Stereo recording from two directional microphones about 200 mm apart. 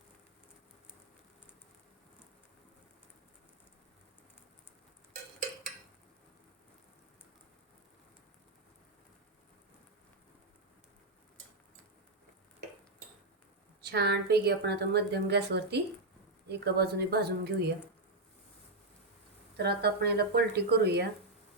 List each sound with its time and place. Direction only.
13.8 s a woman's voice: 55° right (ahead or behind)
19.5 s speech: 55° right (ahead or behind)